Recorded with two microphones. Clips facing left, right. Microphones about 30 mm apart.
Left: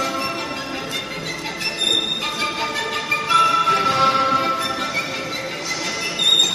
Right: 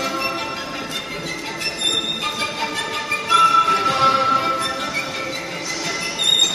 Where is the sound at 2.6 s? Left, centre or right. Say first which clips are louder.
Left 1 dB; centre.